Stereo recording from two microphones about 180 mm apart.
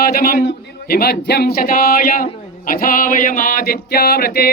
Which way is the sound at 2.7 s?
50° left (ahead or behind).